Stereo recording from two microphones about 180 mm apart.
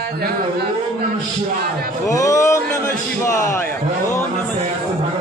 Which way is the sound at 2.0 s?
20° left (ahead or behind).